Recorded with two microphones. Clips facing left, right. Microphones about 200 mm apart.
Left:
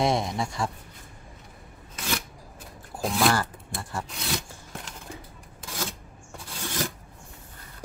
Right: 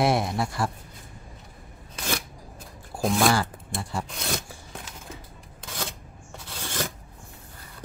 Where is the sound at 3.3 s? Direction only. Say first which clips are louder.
Right 2 dB; 15° right (ahead or behind).